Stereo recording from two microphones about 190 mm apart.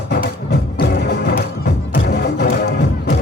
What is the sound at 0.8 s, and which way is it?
Music, 55° left (ahead or behind).